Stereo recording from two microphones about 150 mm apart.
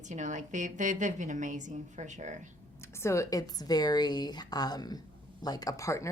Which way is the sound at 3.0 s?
20° left (ahead or behind).